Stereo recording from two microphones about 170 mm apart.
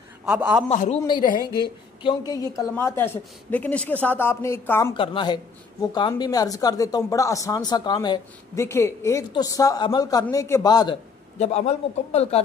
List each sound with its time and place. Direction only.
0.2 s a man's voice: 5° right (ahead or behind)
0.7 s a man's voice: 40° left (ahead or behind)
1.0 s a man's voice: 25° left (ahead or behind)
4.9 s speech: 30° left (ahead or behind)
11.3 s speech: 40° left (ahead or behind)